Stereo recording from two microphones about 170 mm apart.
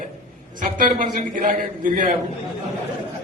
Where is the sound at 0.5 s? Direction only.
50° right (ahead or behind).